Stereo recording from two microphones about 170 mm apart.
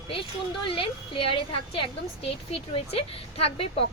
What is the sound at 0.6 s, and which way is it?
A woman's voice, 30° left (ahead or behind).